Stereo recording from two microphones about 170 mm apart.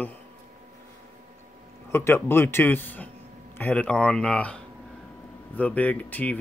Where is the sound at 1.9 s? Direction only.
15° left (ahead or behind).